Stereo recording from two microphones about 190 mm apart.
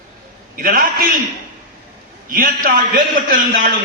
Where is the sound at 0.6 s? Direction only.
50° right (ahead or behind).